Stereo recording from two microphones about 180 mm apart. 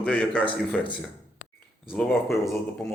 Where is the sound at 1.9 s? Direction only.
Centre (ahead or behind).